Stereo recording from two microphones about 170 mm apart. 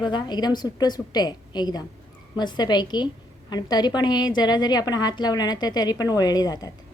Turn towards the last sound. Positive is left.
turn(degrees=20)  # may be behind; listen again after turning